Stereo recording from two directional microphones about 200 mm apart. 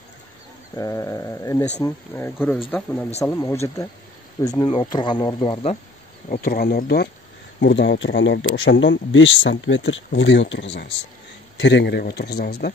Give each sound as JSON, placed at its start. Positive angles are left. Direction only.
{"t": 0.7, "sound": "speech", "side_deg": 15}
{"t": 6.2, "sound": "speech", "side_deg": 40}
{"t": 7.6, "sound": "speech", "side_deg": 60}